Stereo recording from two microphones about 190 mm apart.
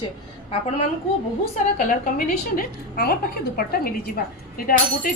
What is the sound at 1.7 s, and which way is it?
A woman's voice, 45° left (ahead or behind).